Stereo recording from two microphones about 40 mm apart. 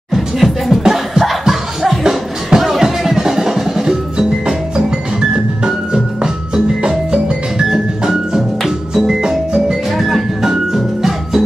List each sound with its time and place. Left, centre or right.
0.1 s music: centre
9.8 s music: centre